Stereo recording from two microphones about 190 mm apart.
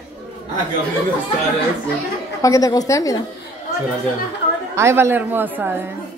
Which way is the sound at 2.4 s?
15° left (ahead or behind).